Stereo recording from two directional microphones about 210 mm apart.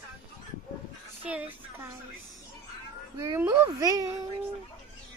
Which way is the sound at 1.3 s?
5° right (ahead or behind).